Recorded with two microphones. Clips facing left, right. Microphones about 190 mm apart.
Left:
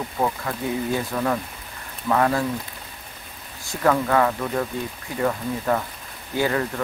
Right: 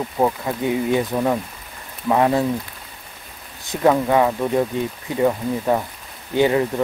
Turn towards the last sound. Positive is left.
turn(degrees=-20)  # may be behind; listen again after turning